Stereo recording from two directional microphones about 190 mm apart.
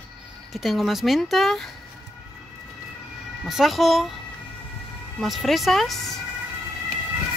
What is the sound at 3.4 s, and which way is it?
Speech, centre (ahead or behind).